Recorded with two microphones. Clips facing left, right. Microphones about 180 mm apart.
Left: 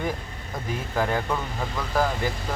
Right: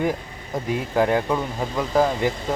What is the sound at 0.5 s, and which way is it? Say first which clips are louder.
Speech: right 6 dB; 15° right (ahead or behind).